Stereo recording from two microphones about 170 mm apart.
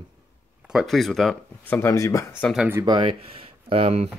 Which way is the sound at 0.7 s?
Centre (ahead or behind).